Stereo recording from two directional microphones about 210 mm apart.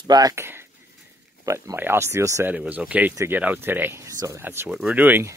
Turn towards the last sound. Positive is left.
turn(degrees=-10)  # may be behind; listen again after turning